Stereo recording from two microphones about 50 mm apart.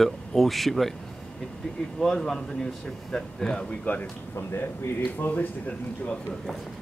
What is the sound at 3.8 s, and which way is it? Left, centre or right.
Speech, left.